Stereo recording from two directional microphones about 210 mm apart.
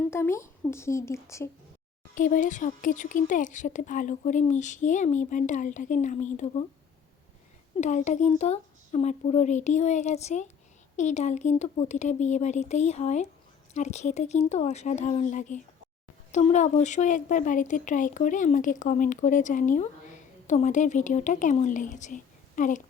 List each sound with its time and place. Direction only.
0.0 s speech: 10° left (ahead or behind)
2.1 s speech: 40° left (ahead or behind)
7.8 s speech: 35° left (ahead or behind)